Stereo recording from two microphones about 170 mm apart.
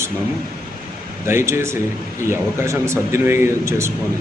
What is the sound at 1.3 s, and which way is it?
Speech, 15° right (ahead or behind).